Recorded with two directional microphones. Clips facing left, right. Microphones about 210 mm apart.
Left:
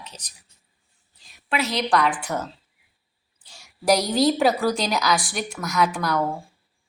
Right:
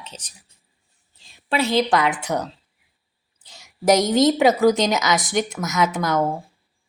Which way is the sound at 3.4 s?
20° right (ahead or behind).